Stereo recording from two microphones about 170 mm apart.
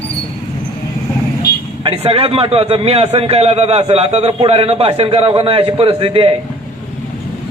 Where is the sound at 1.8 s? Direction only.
35° right (ahead or behind).